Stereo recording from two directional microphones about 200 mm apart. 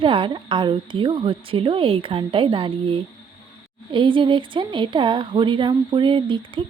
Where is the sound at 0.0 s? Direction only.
25° right (ahead or behind).